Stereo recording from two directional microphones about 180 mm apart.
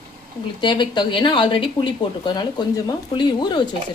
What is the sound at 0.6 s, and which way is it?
Speech, 25° left (ahead or behind).